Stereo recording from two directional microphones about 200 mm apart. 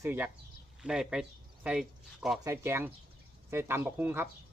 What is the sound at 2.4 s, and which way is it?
Speech, 15° right (ahead or behind).